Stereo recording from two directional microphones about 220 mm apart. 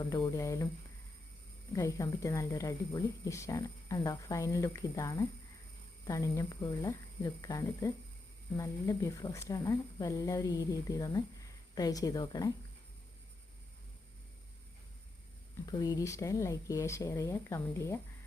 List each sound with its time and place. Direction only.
0.0 s speech: 20° left (ahead or behind)
1.7 s speech: 15° left (ahead or behind)
15.6 s speech: 15° left (ahead or behind)